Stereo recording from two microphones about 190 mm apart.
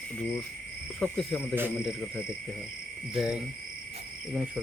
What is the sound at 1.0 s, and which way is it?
Frog, 10° left (ahead or behind).